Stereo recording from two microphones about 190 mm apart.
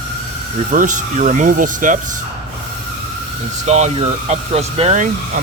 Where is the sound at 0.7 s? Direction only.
40° right (ahead or behind).